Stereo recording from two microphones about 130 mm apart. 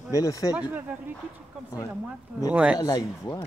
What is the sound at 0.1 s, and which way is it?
Speech, 25° left (ahead or behind).